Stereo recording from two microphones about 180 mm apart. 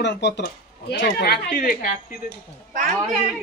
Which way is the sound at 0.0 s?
75° left (ahead or behind).